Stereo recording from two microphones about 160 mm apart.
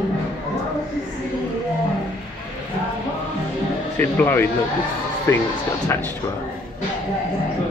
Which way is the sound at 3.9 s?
10° left (ahead or behind).